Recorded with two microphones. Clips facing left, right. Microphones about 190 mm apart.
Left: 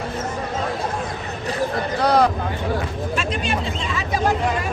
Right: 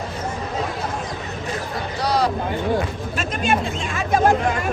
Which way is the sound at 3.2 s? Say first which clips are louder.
Right 4 dB; 50° right (ahead or behind).